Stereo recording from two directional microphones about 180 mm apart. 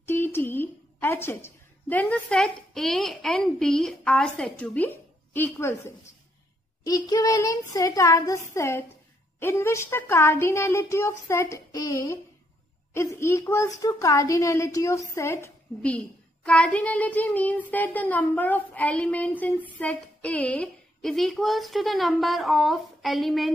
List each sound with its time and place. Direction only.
0.0 s a woman's voice: 10° left (ahead or behind)